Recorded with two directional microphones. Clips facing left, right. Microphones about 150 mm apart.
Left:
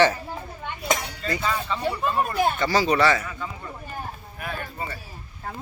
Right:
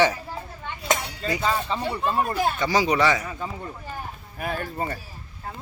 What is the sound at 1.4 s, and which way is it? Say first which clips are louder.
Speech: right 2 dB; 30° right (ahead or behind).